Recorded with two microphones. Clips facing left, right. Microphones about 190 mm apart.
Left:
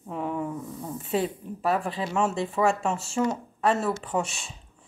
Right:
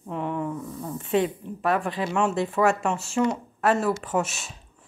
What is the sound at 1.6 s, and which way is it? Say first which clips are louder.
Speech: right 2 dB; centre (ahead or behind).